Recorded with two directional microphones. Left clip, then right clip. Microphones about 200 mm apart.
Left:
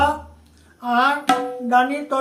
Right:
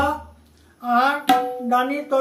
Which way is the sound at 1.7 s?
15° left (ahead or behind).